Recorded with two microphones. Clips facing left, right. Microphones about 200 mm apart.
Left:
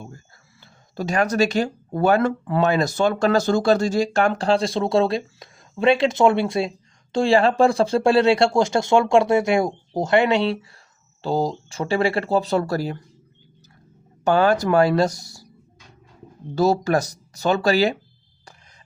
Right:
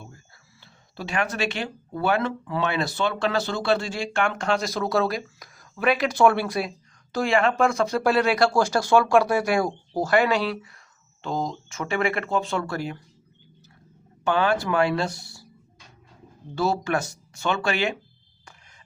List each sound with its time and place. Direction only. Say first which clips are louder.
0.6 s speech: left 7 dB; 45° left (ahead or behind)
14.3 s speech: left 5 dB; 40° left (ahead or behind)
16.6 s speech: left 6 dB; 40° left (ahead or behind)